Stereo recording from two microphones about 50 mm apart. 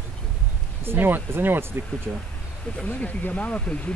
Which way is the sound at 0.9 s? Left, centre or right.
Right.